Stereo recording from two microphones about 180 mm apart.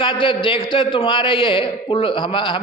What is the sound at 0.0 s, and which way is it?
A man's voice, 30° left (ahead or behind).